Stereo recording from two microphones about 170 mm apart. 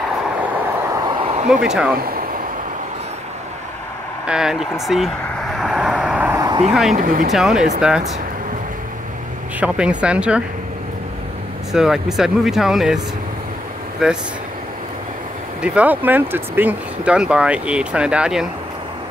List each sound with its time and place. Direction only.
1.2 s a sound: 40° right (ahead or behind)
1.5 s speech: 5° right (ahead or behind)
2.0 s speech: 60° right (ahead or behind)
4.3 s speech: 5° right (ahead or behind)
5.6 s vehicle: centre (ahead or behind)
6.9 s speech: 50° right (ahead or behind)
7.3 s speech: 5° right (ahead or behind)
9.6 s speech: 5° right (ahead or behind)
11.7 s speech: centre (ahead or behind)
14.0 s speech: 5° right (ahead or behind)
15.6 s speech: 10° right (ahead or behind)